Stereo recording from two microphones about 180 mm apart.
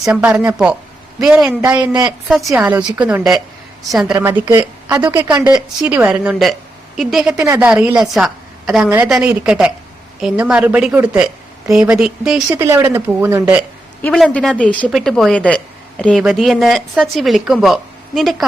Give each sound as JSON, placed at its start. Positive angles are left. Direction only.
{"t": 0.1, "sound": "a woman's voice", "side_deg": -5}
{"t": 5.4, "sound": "a woman's voice", "side_deg": -5}
{"t": 7.4, "sound": "a woman's voice", "side_deg": -15}
{"t": 7.7, "sound": "a woman's voice", "side_deg": -5}
{"t": 12.6, "sound": "a woman's voice", "side_deg": -15}
{"t": 14.0, "sound": "a woman's voice", "side_deg": 5}